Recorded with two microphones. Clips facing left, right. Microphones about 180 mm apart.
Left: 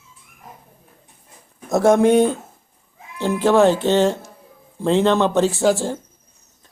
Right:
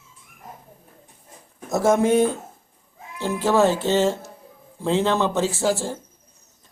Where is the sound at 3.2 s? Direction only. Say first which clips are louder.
Left 4 dB; 20° left (ahead or behind).